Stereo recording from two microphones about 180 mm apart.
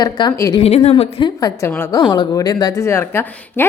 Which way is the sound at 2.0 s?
25° left (ahead or behind).